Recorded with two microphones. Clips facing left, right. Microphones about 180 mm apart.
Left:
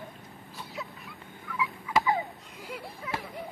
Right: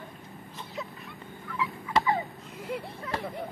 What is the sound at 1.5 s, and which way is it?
Turkey, centre (ahead or behind).